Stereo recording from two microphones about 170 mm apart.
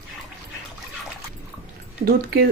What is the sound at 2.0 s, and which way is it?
Speech, 70° right (ahead or behind).